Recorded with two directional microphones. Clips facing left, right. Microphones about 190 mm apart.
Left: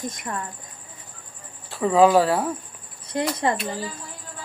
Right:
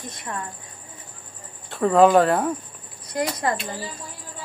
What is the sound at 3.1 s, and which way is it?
Speech, 25° left (ahead or behind).